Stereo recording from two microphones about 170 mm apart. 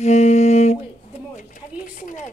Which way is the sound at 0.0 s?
40° left (ahead or behind).